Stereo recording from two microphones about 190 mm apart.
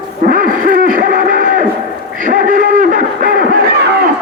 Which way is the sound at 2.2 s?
45° right (ahead or behind).